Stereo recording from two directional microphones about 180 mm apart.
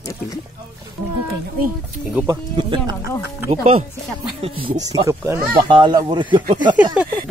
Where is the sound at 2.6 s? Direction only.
25° right (ahead or behind).